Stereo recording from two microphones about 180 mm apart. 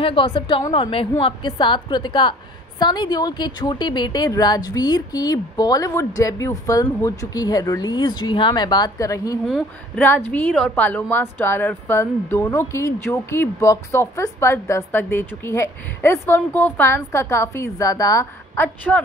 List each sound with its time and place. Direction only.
0.0 s a woman's voice: 30° left (ahead or behind)
9.5 s speech: centre (ahead or behind)
10.0 s a woman's voice: 10° left (ahead or behind)